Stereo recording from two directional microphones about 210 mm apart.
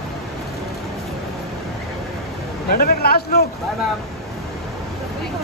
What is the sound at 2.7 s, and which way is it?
Speech, 45° left (ahead or behind).